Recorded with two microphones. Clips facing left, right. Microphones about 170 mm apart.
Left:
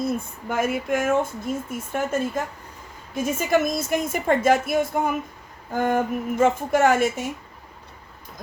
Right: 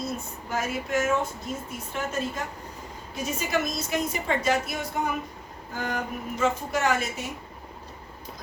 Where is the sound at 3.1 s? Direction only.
50° left (ahead or behind).